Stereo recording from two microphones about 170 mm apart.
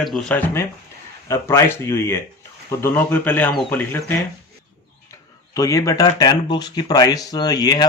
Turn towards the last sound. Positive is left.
turn(degrees=25)  # may be behind; listen again after turning